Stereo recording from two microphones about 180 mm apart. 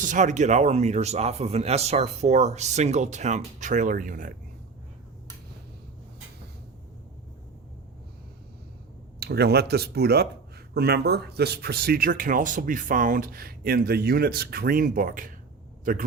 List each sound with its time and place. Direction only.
0.0 s speech: 45° right (ahead or behind)
9.2 s a man's voice: 65° right (ahead or behind)